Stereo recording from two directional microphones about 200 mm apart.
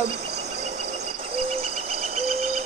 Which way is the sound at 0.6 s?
35° right (ahead or behind).